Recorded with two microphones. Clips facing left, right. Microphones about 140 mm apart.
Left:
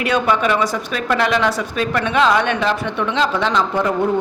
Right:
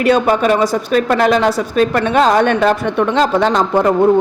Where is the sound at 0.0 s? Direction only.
40° right (ahead or behind).